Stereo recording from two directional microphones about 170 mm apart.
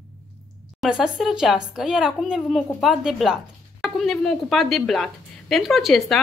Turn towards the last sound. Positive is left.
turn(degrees=0)  # may be behind; listen again after turning